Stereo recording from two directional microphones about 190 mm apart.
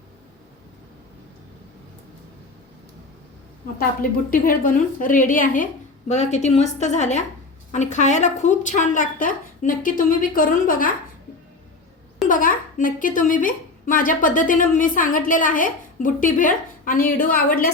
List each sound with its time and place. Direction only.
3.8 s a woman's voice: 50° left (ahead or behind)
12.3 s a woman's voice: 45° left (ahead or behind)